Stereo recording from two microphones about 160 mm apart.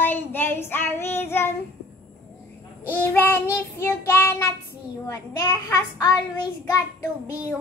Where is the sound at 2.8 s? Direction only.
10° left (ahead or behind).